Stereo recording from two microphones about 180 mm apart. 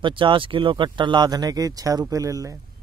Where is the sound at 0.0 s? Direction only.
25° right (ahead or behind).